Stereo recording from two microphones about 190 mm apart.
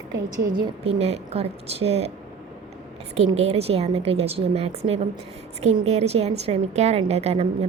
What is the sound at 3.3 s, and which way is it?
A woman's voice, 30° right (ahead or behind).